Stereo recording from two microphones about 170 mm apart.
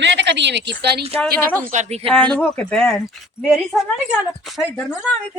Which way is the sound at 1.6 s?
45° right (ahead or behind).